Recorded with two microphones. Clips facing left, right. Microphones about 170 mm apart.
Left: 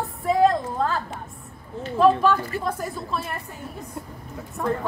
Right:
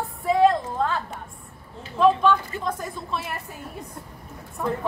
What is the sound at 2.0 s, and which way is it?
A woman's voice, 5° left (ahead or behind).